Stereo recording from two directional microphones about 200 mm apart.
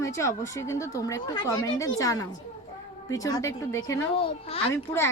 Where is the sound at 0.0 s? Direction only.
15° left (ahead or behind).